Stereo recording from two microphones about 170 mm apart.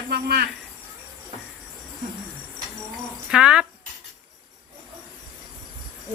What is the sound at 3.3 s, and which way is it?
Speech, 5° right (ahead or behind).